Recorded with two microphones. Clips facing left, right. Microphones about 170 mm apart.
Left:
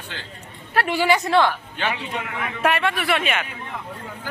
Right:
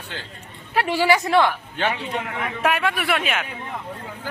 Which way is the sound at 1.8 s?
35° right (ahead or behind).